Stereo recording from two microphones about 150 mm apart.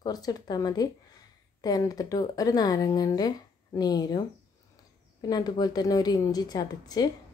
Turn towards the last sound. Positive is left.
turn(degrees=25)  # may be behind; listen again after turning